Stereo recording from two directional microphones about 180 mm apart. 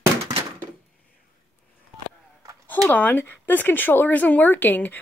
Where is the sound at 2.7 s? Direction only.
10° left (ahead or behind).